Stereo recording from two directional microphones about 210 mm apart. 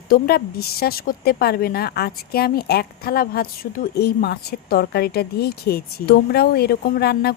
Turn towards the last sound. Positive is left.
turn(degrees=50)  # may be behind; listen again after turning